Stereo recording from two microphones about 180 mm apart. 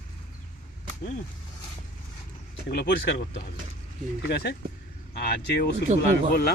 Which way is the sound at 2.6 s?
70° left (ahead or behind).